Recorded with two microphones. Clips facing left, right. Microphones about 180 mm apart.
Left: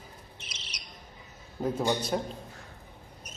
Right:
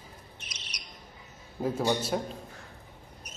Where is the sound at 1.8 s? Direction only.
5° right (ahead or behind).